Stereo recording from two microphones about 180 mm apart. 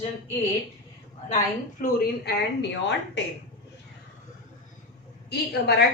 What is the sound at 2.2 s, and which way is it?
Speech, 75° left (ahead or behind).